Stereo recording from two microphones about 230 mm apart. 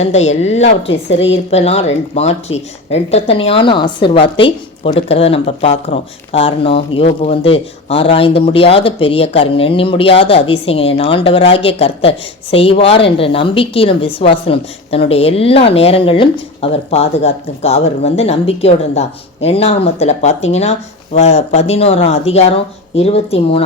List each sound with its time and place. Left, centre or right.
0.0 s speech: left